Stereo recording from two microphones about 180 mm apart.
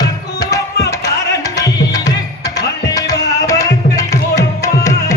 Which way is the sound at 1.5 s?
20° left (ahead or behind).